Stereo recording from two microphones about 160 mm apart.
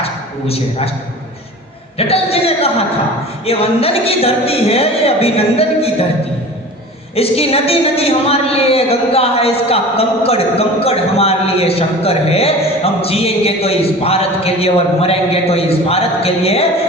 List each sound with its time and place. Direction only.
0.0 s a sound: 40° left (ahead or behind)
2.0 s speech: 40° left (ahead or behind)
7.2 s speech: 40° left (ahead or behind)